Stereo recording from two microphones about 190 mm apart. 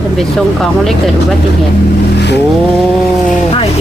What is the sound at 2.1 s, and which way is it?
Vehicle, 65° left (ahead or behind).